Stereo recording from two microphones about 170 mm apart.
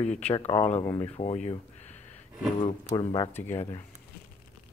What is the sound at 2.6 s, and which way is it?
Speech, 30° left (ahead or behind).